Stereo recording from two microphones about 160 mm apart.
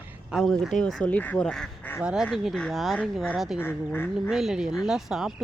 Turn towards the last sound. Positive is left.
turn(degrees=0)  # may be behind; listen again after turning